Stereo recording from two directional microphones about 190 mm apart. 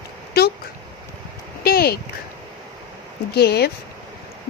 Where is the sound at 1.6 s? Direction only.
55° left (ahead or behind).